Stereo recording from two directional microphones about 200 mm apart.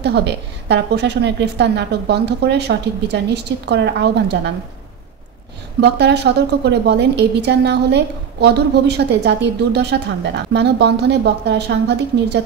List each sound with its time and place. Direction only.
0.0 s a woman's voice: 60° right (ahead or behind)
5.8 s a woman's voice: 55° right (ahead or behind)